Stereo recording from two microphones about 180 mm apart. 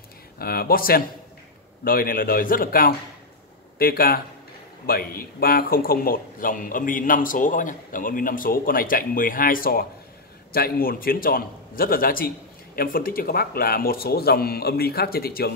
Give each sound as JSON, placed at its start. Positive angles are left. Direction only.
{"t": 0.4, "sound": "a man's voice", "side_deg": 55}